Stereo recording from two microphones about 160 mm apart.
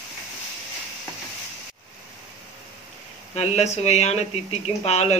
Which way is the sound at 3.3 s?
45° left (ahead or behind).